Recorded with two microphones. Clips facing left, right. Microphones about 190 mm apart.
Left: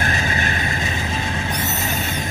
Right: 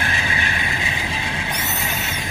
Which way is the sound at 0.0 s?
45° left (ahead or behind).